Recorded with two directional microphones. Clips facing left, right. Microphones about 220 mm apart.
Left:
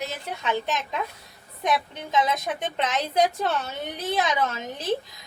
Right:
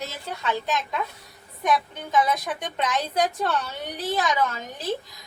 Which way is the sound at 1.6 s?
20° left (ahead or behind).